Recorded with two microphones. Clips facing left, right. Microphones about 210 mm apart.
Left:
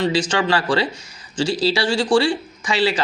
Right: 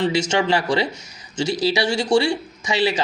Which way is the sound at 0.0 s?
25° right (ahead or behind).